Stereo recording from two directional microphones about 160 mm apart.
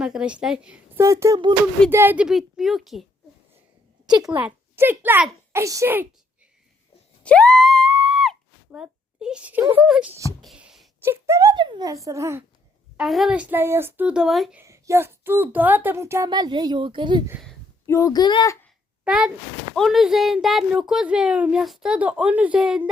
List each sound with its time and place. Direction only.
0.0 s a woman's voice: 5° right (ahead or behind)
1.0 s a woman's voice: 20° right (ahead or behind); by 3.1 s centre (ahead or behind)
4.0 s speech: 25° right (ahead or behind)
4.3 s a child's voice: 10° right (ahead or behind)
7.2 s a sound: 5° left (ahead or behind)
11.0 s a woman's voice: 15° right (ahead or behind)
13.0 s speech: centre (ahead or behind)
14.6 s speech: 15° right (ahead or behind)
17.8 s speech: 20° left (ahead or behind)
19.0 s speech: 5° right (ahead or behind)